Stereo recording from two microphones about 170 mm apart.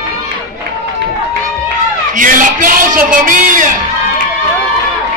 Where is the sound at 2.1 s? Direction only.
50° right (ahead or behind).